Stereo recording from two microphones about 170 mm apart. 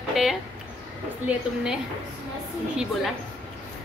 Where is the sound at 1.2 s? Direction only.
5° right (ahead or behind).